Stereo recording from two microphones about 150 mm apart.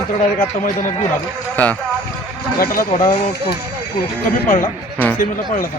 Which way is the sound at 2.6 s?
90° left.